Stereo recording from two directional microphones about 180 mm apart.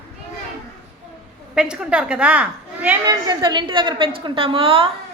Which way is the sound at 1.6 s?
5° right (ahead or behind).